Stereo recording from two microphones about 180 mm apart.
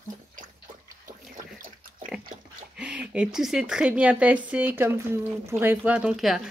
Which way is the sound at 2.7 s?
5° right (ahead or behind).